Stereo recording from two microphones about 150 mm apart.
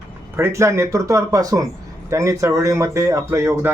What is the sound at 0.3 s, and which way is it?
Speech, 20° right (ahead or behind).